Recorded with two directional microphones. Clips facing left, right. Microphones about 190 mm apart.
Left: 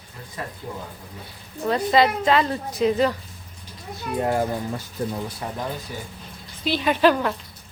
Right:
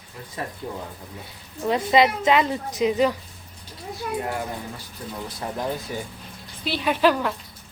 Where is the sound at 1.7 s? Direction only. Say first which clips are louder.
Even; 10° right (ahead or behind).